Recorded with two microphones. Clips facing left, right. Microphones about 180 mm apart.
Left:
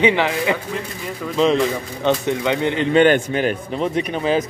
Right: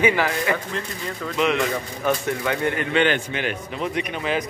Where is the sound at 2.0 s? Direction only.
20° left (ahead or behind).